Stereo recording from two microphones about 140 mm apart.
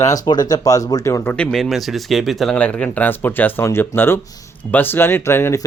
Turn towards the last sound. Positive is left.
turn(degrees=20)  # may be behind; listen again after turning